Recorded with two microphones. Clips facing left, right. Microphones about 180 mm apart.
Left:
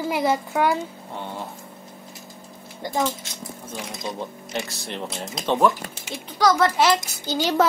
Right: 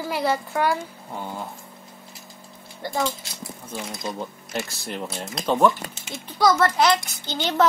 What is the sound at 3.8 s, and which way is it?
A woman's voice, centre (ahead or behind).